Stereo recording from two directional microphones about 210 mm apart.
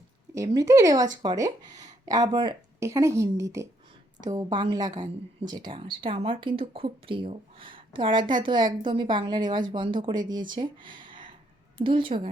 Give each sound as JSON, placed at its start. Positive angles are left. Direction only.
{"t": 0.3, "sound": "a woman's voice", "side_deg": -15}